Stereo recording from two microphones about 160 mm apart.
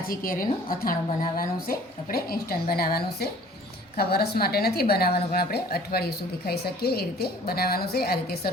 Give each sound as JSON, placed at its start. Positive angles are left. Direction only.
{"t": 0.0, "sound": "a woman's voice", "side_deg": 65}